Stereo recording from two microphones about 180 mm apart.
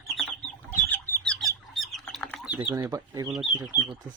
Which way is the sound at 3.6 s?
20° right (ahead or behind).